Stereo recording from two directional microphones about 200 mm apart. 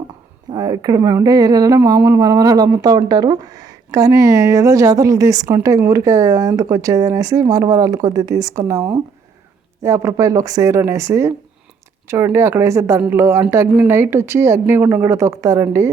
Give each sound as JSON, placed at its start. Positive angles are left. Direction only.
{"t": 0.5, "sound": "speech", "side_deg": -20}
{"t": 9.8, "sound": "speech", "side_deg": -15}